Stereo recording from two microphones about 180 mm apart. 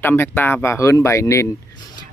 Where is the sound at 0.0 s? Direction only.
10° left (ahead or behind).